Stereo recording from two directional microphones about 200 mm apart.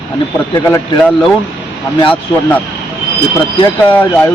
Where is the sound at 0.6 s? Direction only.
15° left (ahead or behind).